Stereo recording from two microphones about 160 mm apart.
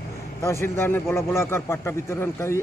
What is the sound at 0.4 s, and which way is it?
A man's voice, 15° left (ahead or behind).